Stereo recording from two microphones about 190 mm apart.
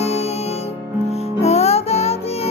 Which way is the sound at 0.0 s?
35° left (ahead or behind).